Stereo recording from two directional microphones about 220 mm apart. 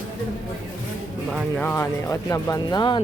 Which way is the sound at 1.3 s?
5° left (ahead or behind).